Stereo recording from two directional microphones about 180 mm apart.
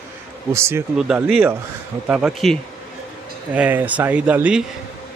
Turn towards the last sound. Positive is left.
turn(degrees=-5)  # may be behind; listen again after turning